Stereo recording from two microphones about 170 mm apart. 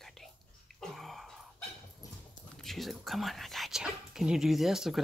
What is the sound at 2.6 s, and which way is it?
Speech, centre (ahead or behind).